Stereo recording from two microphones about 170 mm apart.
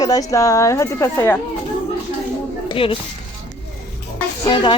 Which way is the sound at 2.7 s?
30° left (ahead or behind).